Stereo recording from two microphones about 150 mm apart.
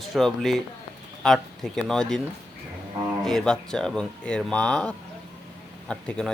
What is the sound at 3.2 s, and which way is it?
A man's voice, 5° left (ahead or behind).